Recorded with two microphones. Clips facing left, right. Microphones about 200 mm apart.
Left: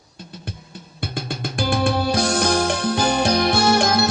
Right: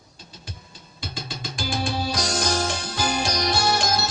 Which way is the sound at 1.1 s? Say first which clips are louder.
Left 8 dB; 60° left (ahead or behind).